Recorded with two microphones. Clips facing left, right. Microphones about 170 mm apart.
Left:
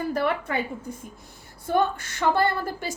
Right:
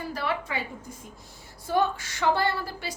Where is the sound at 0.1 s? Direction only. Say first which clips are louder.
Left 3 dB; 50° left (ahead or behind).